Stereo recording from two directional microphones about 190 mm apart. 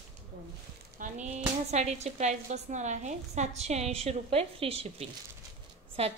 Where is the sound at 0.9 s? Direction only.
40° right (ahead or behind).